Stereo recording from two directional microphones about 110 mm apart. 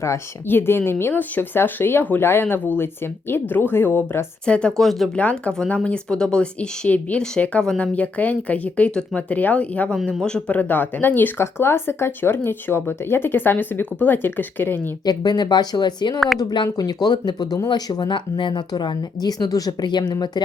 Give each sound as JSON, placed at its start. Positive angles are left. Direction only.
{"t": 0.0, "sound": "speech", "side_deg": 20}
{"t": 4.4, "sound": "speech", "side_deg": 10}
{"t": 9.9, "sound": "speech", "side_deg": 5}
{"t": 15.0, "sound": "speech", "side_deg": 40}